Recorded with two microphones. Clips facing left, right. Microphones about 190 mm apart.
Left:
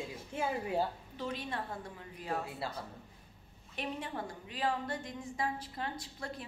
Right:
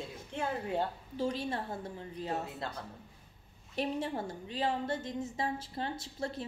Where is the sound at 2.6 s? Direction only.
5° left (ahead or behind).